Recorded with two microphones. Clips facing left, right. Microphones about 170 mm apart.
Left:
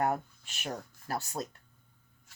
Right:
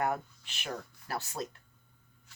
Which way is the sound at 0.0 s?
40° left (ahead or behind).